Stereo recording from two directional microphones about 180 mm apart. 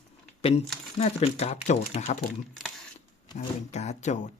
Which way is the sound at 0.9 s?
35° left (ahead or behind).